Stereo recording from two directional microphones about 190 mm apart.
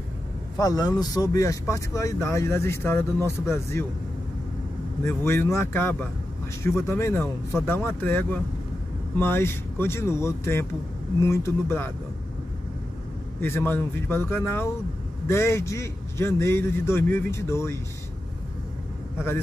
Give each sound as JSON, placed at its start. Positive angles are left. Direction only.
{"t": 0.6, "sound": "a man's voice", "side_deg": 20}
{"t": 5.0, "sound": "a man's voice", "side_deg": 10}
{"t": 13.4, "sound": "a man's voice", "side_deg": 10}